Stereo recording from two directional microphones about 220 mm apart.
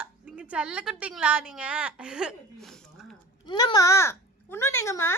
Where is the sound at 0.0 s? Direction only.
5° right (ahead or behind).